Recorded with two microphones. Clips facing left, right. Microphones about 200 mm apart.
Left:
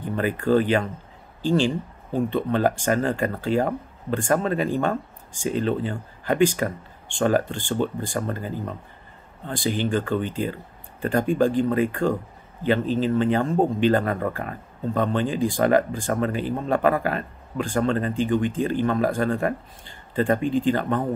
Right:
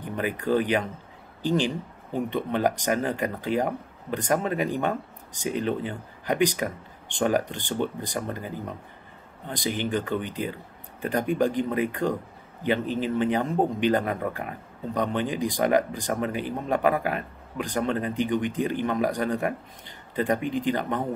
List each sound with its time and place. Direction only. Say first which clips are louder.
0.0 s speech: left 4 dB; 15° right (ahead or behind)